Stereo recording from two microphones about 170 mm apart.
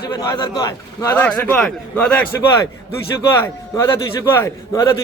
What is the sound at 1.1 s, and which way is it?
A man's voice, 10° left (ahead or behind).